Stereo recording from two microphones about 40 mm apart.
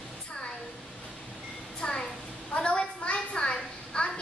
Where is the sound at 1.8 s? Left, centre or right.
Left.